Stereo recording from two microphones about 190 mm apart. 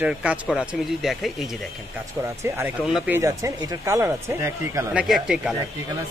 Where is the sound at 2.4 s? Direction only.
10° right (ahead or behind).